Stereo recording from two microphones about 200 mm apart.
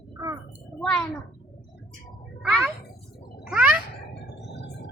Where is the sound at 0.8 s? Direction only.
Centre (ahead or behind).